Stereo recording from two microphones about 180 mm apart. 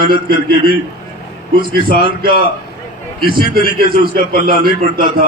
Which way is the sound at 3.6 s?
55° right (ahead or behind).